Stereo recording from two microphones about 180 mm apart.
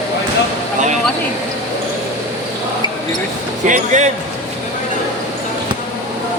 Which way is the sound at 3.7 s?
40° right (ahead or behind).